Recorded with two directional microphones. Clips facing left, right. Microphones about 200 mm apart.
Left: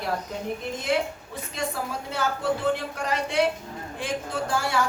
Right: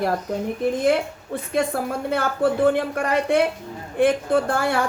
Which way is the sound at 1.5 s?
55° right (ahead or behind).